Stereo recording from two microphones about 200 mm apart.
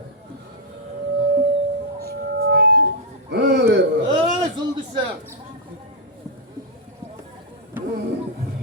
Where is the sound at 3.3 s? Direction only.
60° right (ahead or behind).